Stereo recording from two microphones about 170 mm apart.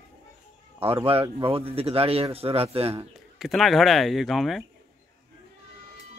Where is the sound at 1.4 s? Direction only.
35° right (ahead or behind).